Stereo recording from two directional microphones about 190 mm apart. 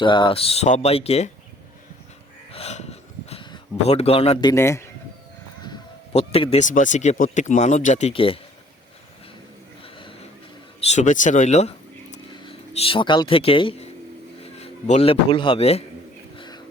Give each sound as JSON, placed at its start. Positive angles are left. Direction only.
{"t": 0.0, "sound": "speech", "side_deg": 25}
{"t": 2.5, "sound": "a sound", "side_deg": 30}
{"t": 4.5, "sound": "speech", "side_deg": 15}
{"t": 6.1, "sound": "speech", "side_deg": 30}
{"t": 9.8, "sound": "a sound", "side_deg": 30}
{"t": 10.8, "sound": "speech", "side_deg": 40}
{"t": 16.4, "sound": "whispering", "side_deg": 25}